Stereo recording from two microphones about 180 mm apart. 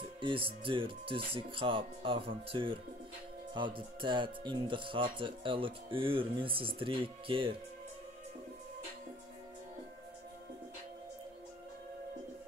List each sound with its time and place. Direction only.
0.2 s speech: 30° right (ahead or behind)